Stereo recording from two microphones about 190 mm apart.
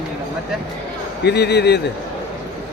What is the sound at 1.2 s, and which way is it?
Speech, 60° left (ahead or behind).